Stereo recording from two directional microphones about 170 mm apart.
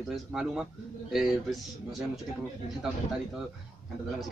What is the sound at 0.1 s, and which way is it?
Speech, 5° right (ahead or behind).